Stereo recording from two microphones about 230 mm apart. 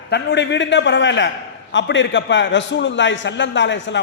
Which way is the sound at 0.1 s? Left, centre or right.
Left.